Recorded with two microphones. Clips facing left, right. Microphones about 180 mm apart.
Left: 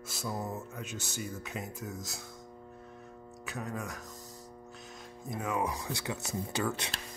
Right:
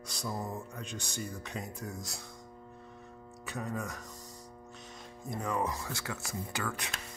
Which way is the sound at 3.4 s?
Centre (ahead or behind).